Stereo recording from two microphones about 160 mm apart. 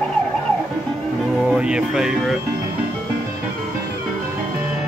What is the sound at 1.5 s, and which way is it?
Speech, 5° right (ahead or behind).